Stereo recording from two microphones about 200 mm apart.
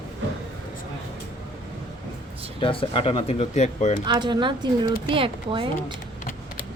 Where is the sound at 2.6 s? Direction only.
25° left (ahead or behind).